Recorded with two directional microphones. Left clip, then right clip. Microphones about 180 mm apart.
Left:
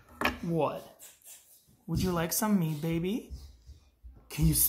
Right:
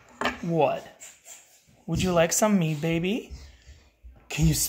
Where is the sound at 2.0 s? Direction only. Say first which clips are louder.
Right 10 dB; 35° right (ahead or behind).